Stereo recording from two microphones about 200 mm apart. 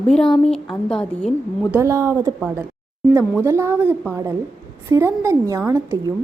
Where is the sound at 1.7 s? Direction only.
15° right (ahead or behind).